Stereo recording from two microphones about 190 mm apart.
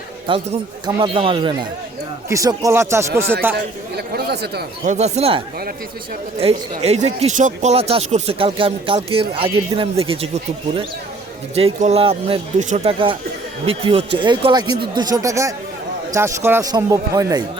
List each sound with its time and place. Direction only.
0.3 s speech: 30° right (ahead or behind); by 3.1 s 15° right (ahead or behind)
3.9 s chatter: 60° right (ahead or behind)
4.9 s speech: 35° right (ahead or behind)
6.4 s speech: 30° right (ahead or behind)
11.5 s speech: 35° right (ahead or behind); by 17.4 s 20° right (ahead or behind)